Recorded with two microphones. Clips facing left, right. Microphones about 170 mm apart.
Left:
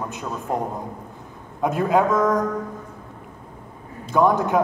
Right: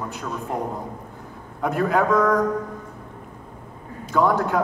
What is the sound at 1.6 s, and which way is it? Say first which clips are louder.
Speech: left 2 dB; 20° left (ahead or behind).